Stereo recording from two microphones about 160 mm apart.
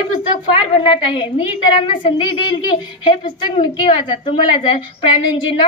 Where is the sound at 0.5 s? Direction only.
35° left (ahead or behind).